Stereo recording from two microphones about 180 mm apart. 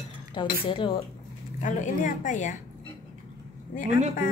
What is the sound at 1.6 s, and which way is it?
Speech, 45° left (ahead or behind).